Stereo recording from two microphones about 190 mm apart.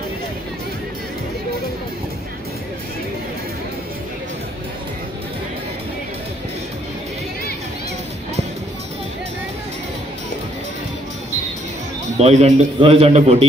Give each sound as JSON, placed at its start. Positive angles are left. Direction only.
{"t": 12.2, "sound": "a man's voice", "side_deg": -35}